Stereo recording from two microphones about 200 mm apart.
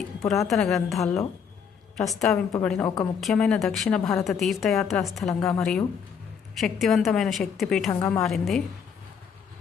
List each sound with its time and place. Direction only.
0.4 s a woman's voice: centre (ahead or behind)
1.0 s a woman's voice: 15° left (ahead or behind)
2.0 s a woman's voice: centre (ahead or behind)
2.5 s a woman's voice: 10° left (ahead or behind)
7.9 s a woman's voice: 15° left (ahead or behind)
8.2 s a woman's voice: centre (ahead or behind)